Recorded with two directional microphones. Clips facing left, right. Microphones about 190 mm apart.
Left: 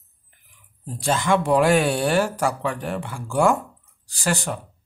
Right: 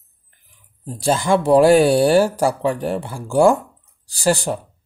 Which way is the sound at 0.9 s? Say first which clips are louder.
Right 4 dB; 35° right (ahead or behind).